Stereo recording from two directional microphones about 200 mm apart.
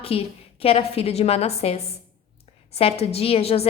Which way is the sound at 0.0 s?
30° left (ahead or behind).